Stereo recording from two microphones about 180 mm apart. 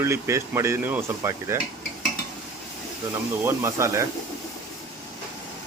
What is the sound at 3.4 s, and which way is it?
Speech, 15° right (ahead or behind).